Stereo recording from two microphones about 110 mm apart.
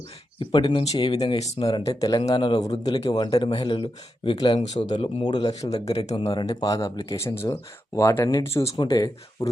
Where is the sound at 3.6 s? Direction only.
45° left (ahead or behind).